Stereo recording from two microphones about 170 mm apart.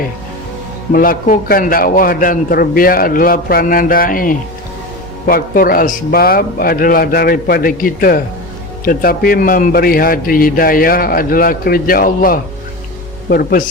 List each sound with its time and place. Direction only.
0.9 s a man's voice: 55° left (ahead or behind)